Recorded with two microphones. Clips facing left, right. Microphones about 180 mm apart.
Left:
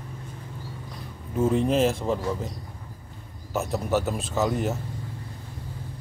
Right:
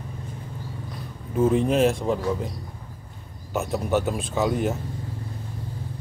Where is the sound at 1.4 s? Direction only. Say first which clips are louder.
Right 2 dB; 10° right (ahead or behind).